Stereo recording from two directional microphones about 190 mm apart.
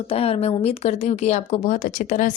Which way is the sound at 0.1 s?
30° left (ahead or behind).